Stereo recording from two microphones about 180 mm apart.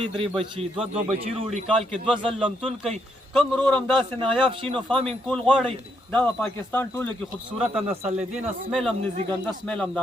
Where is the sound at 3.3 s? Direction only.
Centre (ahead or behind).